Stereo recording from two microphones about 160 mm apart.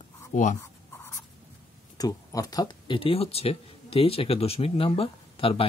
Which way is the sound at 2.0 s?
20° left (ahead or behind).